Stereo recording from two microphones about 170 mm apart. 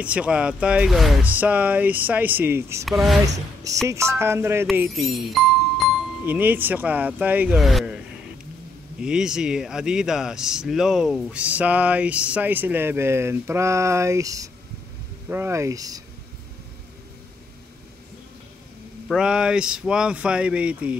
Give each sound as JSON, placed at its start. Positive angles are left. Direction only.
{"t": 0.0, "sound": "a man's voice", "side_deg": -5}
{"t": 2.8, "sound": "speech", "side_deg": 0}
{"t": 3.9, "sound": "a man's voice", "side_deg": -15}
{"t": 4.7, "sound": "speech", "side_deg": 0}
{"t": 9.0, "sound": "a man's voice", "side_deg": -5}
{"t": 19.0, "sound": "speech", "side_deg": -5}